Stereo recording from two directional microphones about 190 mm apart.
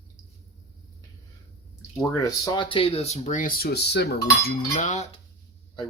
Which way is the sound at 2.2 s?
20° left (ahead or behind).